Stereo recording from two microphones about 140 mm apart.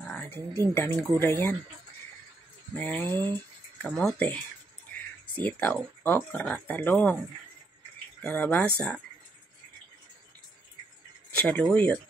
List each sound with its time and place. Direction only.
0.0 s a sound: 5° left (ahead or behind)
0.3 s speech: 15° left (ahead or behind)
2.7 s speech: 10° left (ahead or behind)
3.3 s a sound: 10° left (ahead or behind)
4.2 s speech: 10° left (ahead or behind)
8.2 s speech: 10° left (ahead or behind)
11.4 s speech: 10° left (ahead or behind)